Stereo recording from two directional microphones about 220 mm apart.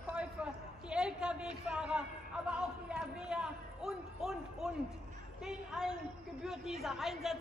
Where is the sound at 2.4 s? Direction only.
5° right (ahead or behind).